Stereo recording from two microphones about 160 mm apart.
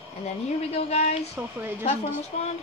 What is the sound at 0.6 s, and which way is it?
Speech, 40° left (ahead or behind).